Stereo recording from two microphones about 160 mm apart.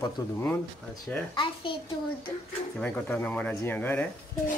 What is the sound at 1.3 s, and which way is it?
Speech, 30° left (ahead or behind).